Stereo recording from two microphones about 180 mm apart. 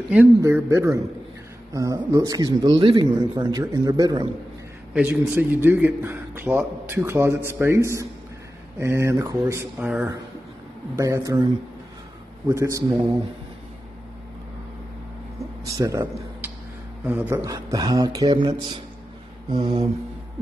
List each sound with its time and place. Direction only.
0.1 s a man's voice: 15° right (ahead or behind)
4.9 s a man's voice: 10° right (ahead or behind)
11.0 s a man's voice: 15° right (ahead or behind)
12.4 s a man's voice: 15° right (ahead or behind)
15.3 s a sound: 15° right (ahead or behind)
17.0 s a man's voice: 10° right (ahead or behind)
19.5 s mantra: 35° right (ahead or behind)